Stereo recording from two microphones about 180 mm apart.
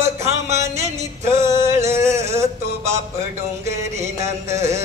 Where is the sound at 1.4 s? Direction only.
15° right (ahead or behind).